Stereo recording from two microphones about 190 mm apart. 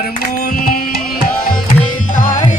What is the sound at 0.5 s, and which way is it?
Music, 50° left (ahead or behind).